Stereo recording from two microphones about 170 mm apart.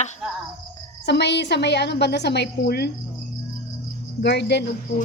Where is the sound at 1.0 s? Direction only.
90° left; by 2.9 s 70° left (ahead or behind).